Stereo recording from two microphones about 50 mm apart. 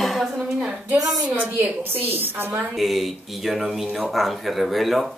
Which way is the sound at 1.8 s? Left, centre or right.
Right.